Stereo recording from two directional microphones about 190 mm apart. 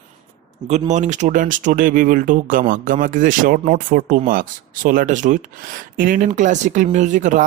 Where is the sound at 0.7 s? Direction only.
40° right (ahead or behind).